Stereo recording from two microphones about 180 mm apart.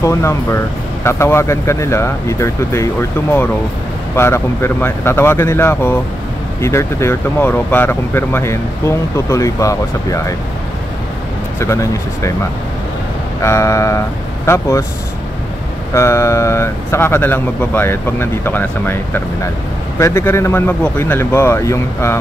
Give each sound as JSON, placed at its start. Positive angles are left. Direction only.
{"t": 0.0, "sound": "speech", "side_deg": 15}
{"t": 11.6, "sound": "speech", "side_deg": 15}
{"t": 13.4, "sound": "speech", "side_deg": 15}
{"t": 15.9, "sound": "speech", "side_deg": 15}